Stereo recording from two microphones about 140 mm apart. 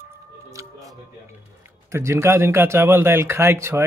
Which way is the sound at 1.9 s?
20° right (ahead or behind).